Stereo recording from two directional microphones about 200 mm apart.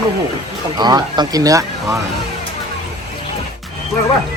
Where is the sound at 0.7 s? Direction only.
20° right (ahead or behind).